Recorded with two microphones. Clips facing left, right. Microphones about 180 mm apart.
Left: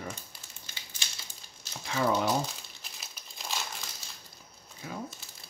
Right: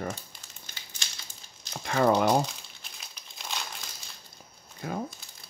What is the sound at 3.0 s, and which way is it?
Crumpling, centre (ahead or behind).